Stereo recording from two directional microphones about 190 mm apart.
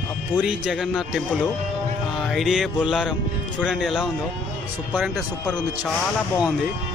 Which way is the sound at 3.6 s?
Centre (ahead or behind).